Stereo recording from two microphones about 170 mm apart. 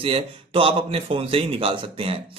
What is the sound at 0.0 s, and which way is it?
A man's voice, 35° right (ahead or behind).